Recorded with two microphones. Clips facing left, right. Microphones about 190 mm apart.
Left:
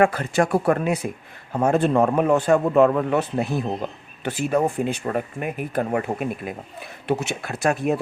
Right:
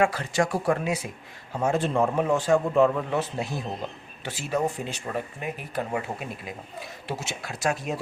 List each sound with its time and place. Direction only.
0.0 s speech: 55° left (ahead or behind)